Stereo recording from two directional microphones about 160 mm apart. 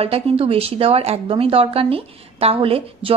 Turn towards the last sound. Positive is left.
turn(degrees=-35)  # may be behind; listen again after turning